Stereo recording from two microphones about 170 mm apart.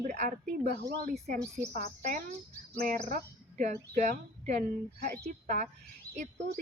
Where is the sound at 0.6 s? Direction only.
70° right (ahead or behind).